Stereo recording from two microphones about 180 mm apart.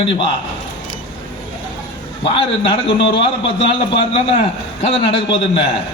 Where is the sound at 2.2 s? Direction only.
30° left (ahead or behind).